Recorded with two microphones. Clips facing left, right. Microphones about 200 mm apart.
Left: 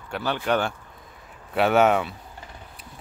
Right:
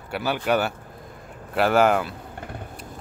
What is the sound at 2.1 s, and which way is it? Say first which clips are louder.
Vehicle: right 6 dB; 60° right (ahead or behind).